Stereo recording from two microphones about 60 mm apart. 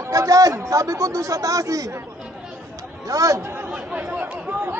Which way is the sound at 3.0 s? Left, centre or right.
Right.